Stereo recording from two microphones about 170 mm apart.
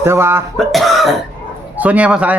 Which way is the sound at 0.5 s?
Centre (ahead or behind).